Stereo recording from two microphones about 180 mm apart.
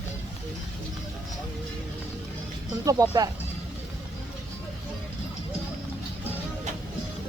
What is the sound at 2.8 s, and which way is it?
Speech, 20° right (ahead or behind).